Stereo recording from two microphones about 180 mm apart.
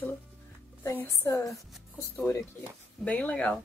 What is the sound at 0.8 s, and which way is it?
Speech, 15° left (ahead or behind).